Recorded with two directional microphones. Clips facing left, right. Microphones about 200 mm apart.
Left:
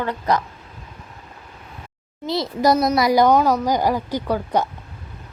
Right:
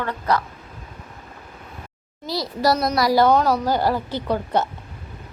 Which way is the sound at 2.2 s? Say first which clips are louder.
Left 3 dB; 25° left (ahead or behind).